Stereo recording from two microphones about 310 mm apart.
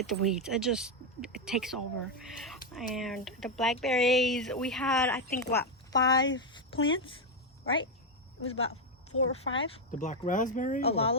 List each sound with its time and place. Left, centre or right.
0.0 s speech: centre
8.4 s speech: left
9.6 s speech: left